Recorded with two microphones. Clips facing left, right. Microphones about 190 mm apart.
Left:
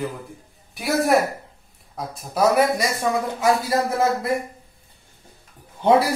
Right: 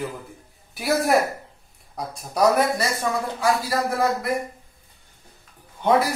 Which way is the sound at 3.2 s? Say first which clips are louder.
Left 2 dB; 20° left (ahead or behind).